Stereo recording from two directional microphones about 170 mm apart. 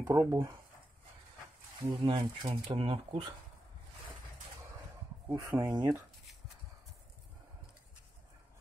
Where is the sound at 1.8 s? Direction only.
20° right (ahead or behind).